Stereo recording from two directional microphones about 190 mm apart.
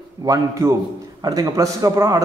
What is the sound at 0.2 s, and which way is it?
A man's voice, 15° right (ahead or behind).